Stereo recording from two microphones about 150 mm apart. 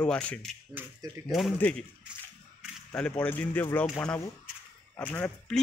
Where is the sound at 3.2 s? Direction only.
10° left (ahead or behind).